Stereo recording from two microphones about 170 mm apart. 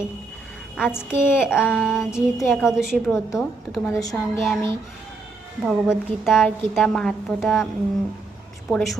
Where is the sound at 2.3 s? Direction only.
5° right (ahead or behind).